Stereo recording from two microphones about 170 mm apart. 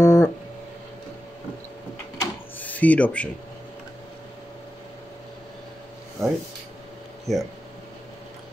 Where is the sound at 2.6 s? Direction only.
10° left (ahead or behind).